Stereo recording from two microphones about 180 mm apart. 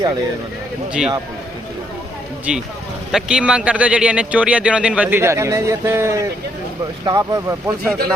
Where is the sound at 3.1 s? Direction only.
5° right (ahead or behind).